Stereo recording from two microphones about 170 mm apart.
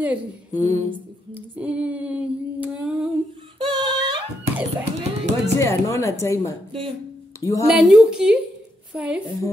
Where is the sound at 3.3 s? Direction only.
30° right (ahead or behind).